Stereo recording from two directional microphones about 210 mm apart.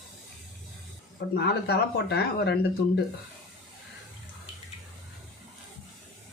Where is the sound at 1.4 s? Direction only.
50° left (ahead or behind).